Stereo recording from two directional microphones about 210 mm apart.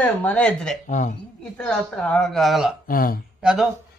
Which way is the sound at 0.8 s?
35° left (ahead or behind).